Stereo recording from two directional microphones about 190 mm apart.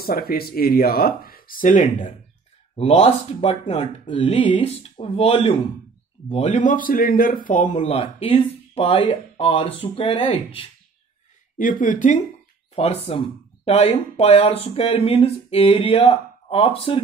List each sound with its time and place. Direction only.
0.0 s speech: 50° left (ahead or behind)
2.7 s speech: 30° left (ahead or behind)
7.8 s speech: 30° left (ahead or behind)
11.8 s speech: 45° left (ahead or behind)